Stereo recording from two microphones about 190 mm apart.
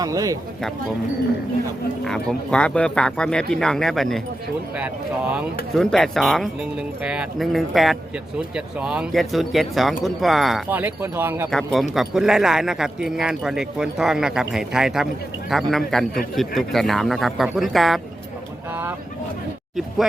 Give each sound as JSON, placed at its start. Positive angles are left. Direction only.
{"t": 0.0, "sound": "speech", "side_deg": -20}
{"t": 2.0, "sound": "speech", "side_deg": 5}
{"t": 5.7, "sound": "speech", "side_deg": 0}
{"t": 11.5, "sound": "speech", "side_deg": 0}
{"t": 18.7, "sound": "vehicle", "side_deg": -10}